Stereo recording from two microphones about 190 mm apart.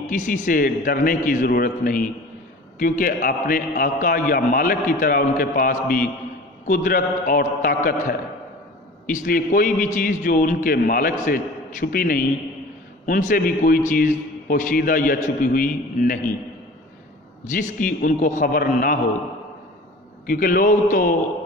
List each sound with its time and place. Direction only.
0.0 s a man's voice: 40° left (ahead or behind)
17.5 s a man's voice: 40° left (ahead or behind)
20.2 s a man's voice: 50° left (ahead or behind)